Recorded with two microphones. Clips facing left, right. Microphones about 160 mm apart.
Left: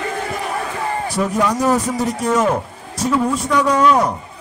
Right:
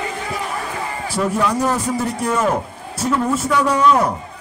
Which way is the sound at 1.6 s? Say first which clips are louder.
Left 2 dB; 10° left (ahead or behind).